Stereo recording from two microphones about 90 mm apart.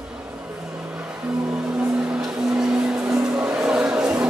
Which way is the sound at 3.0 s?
25° right (ahead or behind).